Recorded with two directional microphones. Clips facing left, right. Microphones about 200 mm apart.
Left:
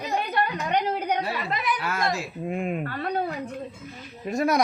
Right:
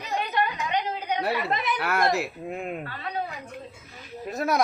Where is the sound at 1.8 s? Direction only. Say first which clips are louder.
Right 3 dB; 65° right (ahead or behind).